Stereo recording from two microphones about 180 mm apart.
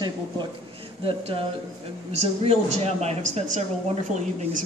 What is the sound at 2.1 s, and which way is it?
A woman's voice, 35° right (ahead or behind).